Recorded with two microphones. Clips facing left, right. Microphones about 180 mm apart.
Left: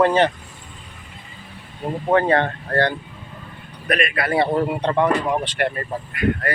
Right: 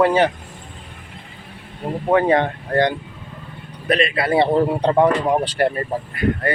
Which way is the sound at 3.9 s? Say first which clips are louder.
Right 3 dB; 30° right (ahead or behind).